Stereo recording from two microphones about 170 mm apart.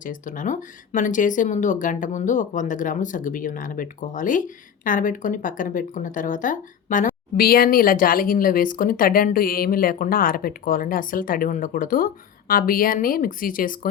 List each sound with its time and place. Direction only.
0.0 s speech: 50° left (ahead or behind)